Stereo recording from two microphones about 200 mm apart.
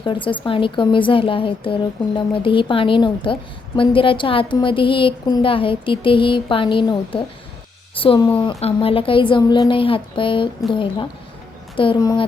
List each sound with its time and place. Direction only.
0.0 s a woman's voice: 25° left (ahead or behind)